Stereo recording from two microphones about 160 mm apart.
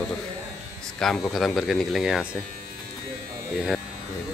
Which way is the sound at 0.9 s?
Centre (ahead or behind).